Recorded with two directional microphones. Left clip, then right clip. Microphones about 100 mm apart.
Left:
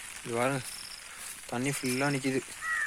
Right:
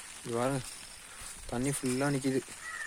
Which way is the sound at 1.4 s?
25° right (ahead or behind).